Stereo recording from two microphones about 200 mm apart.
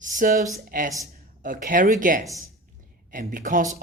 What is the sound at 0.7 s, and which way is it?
A man's voice, 45° right (ahead or behind).